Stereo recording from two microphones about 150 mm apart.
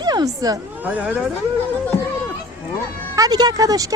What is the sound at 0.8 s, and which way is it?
Speech, 10° right (ahead or behind).